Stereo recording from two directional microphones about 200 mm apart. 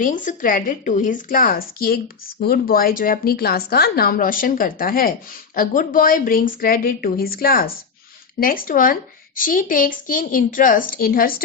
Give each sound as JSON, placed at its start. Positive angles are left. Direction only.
{"t": 0.0, "sound": "a woman's voice", "side_deg": 40}